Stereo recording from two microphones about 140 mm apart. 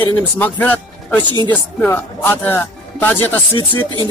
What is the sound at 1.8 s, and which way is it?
Speech, 15° left (ahead or behind).